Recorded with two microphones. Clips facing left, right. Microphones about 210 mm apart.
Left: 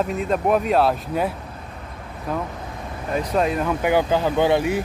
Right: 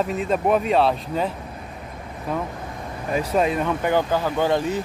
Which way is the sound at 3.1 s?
5° right (ahead or behind).